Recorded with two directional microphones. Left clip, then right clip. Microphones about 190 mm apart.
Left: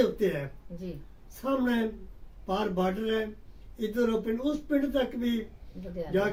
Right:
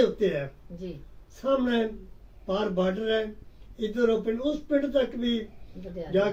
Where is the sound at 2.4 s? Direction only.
25° left (ahead or behind).